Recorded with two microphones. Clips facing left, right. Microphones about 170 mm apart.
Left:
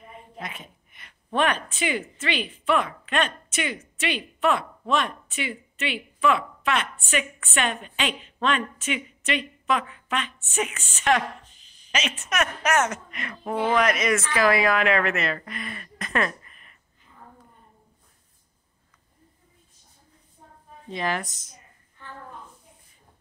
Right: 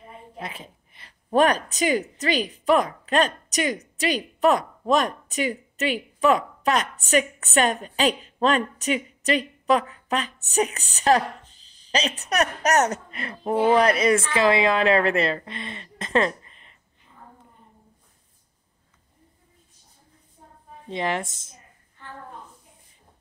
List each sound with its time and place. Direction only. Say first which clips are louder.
0.4 s a woman's voice: right 2 dB; 30° right (ahead or behind)
20.9 s speech: right 2 dB; 25° right (ahead or behind)